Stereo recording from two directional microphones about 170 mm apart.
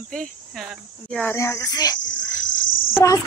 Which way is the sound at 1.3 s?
15° left (ahead or behind).